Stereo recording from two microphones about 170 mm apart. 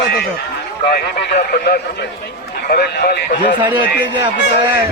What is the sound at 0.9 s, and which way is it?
Speech, 70° left (ahead or behind).